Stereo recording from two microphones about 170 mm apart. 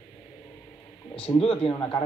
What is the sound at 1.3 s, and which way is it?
Speech, 35° left (ahead or behind).